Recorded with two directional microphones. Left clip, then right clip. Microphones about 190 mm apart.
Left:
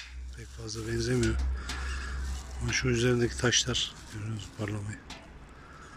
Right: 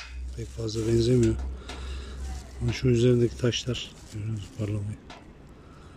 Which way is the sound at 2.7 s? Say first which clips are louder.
Right 4 dB; 20° right (ahead or behind).